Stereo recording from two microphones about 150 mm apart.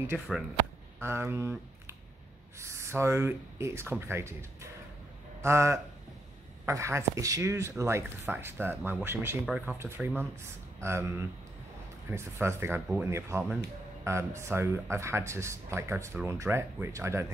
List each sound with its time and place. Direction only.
0.1 s speech: 5° right (ahead or behind)
1.0 s speech: 15° right (ahead or behind)